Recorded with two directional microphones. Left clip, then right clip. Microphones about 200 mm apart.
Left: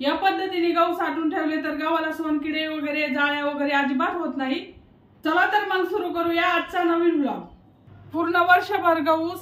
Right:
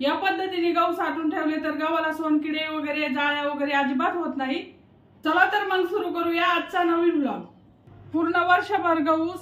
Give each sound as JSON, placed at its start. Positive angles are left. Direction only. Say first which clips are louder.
{"t": 0.0, "sound": "a woman's voice", "louder": "left 2 dB", "side_deg": -10}
{"t": 8.1, "sound": "a woman's voice", "louder": "left 2 dB", "side_deg": 25}